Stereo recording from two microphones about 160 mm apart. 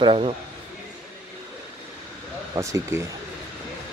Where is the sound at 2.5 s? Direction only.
20° right (ahead or behind).